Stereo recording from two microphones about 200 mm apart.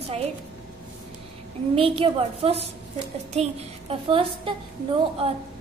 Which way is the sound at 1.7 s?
30° right (ahead or behind).